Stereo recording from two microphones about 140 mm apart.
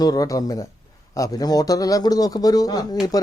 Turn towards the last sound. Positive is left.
turn(degrees=25)  # may be behind; listen again after turning